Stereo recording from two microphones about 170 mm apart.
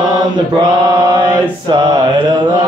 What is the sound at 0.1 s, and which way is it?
Mantra, 25° right (ahead or behind).